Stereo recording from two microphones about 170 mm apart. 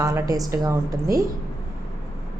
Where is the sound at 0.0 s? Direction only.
20° right (ahead or behind).